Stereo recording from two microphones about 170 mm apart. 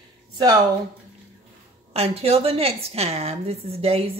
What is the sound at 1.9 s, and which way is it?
A woman's voice, 35° right (ahead or behind).